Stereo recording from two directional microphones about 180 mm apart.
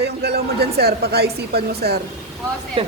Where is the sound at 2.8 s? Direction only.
30° right (ahead or behind).